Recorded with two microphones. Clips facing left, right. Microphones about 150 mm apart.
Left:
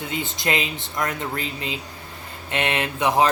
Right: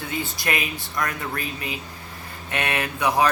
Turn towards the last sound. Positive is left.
turn(degrees=25)  # may be behind; listen again after turning